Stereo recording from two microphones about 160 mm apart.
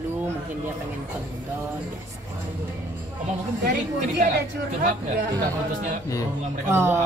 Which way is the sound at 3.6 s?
90° right.